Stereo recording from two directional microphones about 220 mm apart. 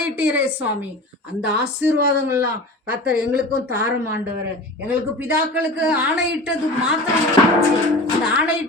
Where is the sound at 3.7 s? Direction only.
10° right (ahead or behind).